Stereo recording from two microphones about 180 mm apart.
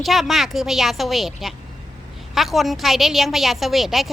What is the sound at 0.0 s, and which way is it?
A woman's voice, centre (ahead or behind).